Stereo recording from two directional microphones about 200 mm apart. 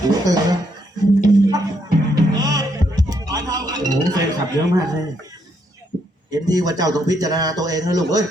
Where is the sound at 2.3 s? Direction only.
20° right (ahead or behind).